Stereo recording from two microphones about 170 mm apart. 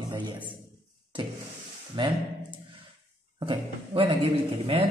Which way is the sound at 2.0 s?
30° right (ahead or behind).